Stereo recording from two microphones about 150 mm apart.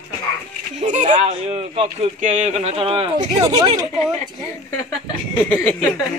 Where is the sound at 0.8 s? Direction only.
50° right (ahead or behind).